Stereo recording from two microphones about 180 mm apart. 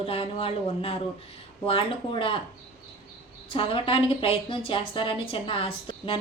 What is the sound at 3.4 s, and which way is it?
A woman's voice, 30° left (ahead or behind).